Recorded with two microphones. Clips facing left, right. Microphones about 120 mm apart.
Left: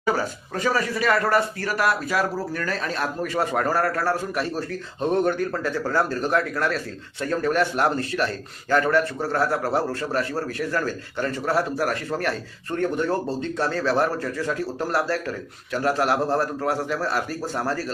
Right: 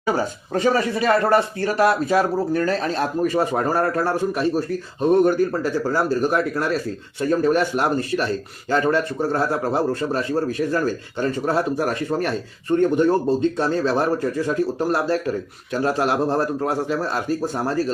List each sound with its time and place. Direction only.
0.0 s a man's voice: 20° right (ahead or behind)